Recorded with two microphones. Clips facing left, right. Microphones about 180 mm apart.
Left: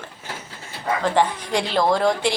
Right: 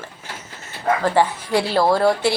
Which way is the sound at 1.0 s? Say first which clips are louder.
Left 1 dB; 5° right (ahead or behind).